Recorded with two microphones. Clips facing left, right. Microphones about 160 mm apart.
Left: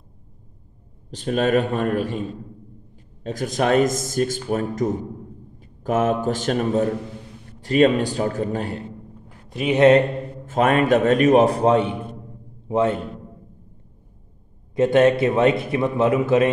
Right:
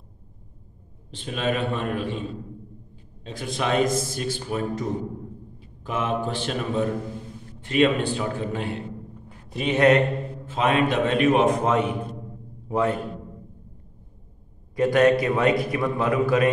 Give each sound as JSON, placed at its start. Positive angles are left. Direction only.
{"t": 1.1, "sound": "speech", "side_deg": 45}
{"t": 3.3, "sound": "speech", "side_deg": 45}
{"t": 5.9, "sound": "a man's voice", "side_deg": 45}
{"t": 9.8, "sound": "a man's voice", "side_deg": 30}
{"t": 10.4, "sound": "a man's voice", "side_deg": 50}
{"t": 14.8, "sound": "a man's voice", "side_deg": 25}